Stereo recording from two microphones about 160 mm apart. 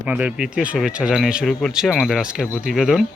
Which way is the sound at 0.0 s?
10° right (ahead or behind).